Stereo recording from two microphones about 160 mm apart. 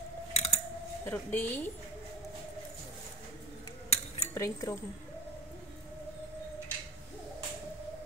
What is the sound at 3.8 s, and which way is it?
Cutlery, 40° left (ahead or behind).